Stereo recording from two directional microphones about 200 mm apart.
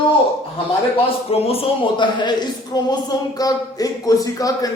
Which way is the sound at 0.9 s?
30° left (ahead or behind).